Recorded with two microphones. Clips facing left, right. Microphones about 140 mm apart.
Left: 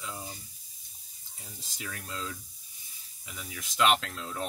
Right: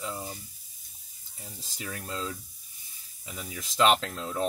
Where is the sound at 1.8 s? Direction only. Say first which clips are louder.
Right 4 dB; 35° right (ahead or behind).